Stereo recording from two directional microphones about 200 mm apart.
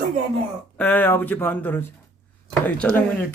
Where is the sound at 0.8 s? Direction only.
10° left (ahead or behind).